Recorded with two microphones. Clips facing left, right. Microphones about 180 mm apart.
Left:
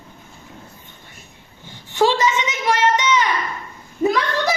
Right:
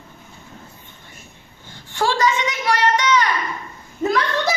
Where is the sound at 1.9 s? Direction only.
20° left (ahead or behind).